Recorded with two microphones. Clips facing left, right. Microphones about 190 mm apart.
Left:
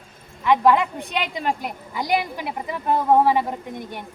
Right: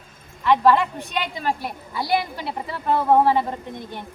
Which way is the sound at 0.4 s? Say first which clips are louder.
Even; 15° left (ahead or behind).